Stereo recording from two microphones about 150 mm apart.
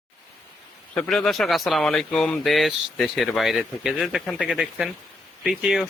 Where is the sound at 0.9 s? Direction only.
5° left (ahead or behind).